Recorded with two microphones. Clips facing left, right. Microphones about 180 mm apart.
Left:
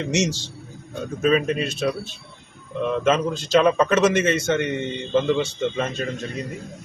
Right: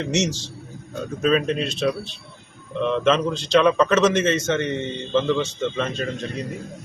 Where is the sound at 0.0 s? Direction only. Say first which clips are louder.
Even; 10° left (ahead or behind).